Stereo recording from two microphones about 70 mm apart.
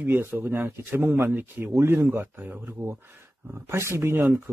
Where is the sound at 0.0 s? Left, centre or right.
Right.